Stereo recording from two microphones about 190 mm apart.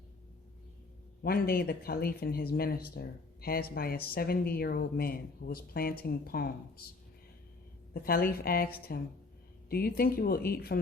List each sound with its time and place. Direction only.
1.2 s speech: 55° left (ahead or behind)
8.0 s speech: 50° left (ahead or behind)